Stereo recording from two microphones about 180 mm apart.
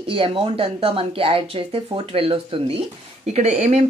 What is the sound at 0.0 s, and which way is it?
Speech, 30° right (ahead or behind).